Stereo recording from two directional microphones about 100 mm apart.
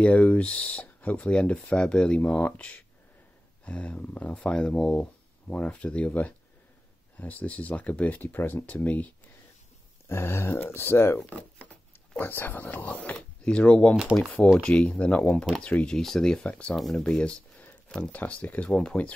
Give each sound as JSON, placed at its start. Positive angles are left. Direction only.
{"t": 0.0, "sound": "speech", "side_deg": 10}
{"t": 10.0, "sound": "speech", "side_deg": 25}